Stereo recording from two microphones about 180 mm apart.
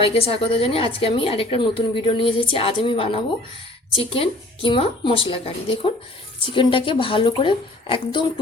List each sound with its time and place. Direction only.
0.0 s a woman's voice: 30° left (ahead or behind)